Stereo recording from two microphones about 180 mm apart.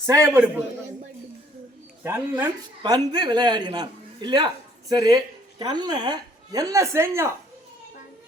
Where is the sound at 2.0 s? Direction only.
10° right (ahead or behind).